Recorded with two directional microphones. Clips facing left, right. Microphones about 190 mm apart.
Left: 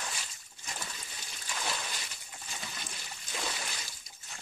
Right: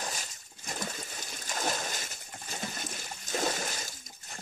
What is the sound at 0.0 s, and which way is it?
Splash, 45° right (ahead or behind).